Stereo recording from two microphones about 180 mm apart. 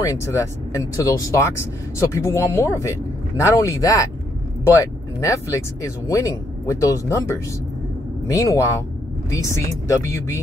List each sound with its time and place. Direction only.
0.0 s speech: 15° left (ahead or behind)